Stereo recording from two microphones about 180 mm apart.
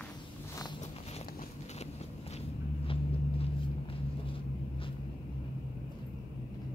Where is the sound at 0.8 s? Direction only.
35° left (ahead or behind).